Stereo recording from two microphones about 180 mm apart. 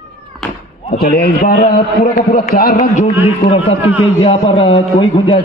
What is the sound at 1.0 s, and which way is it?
A man's voice, 55° left (ahead or behind).